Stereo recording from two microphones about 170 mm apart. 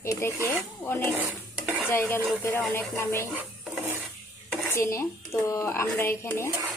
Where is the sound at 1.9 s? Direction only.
15° left (ahead or behind).